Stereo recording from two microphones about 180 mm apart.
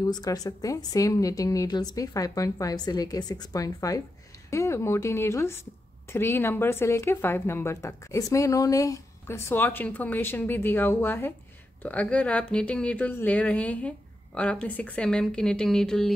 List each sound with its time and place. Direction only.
0.0 s a woman's voice: 20° left (ahead or behind); by 16.2 s 5° left (ahead or behind)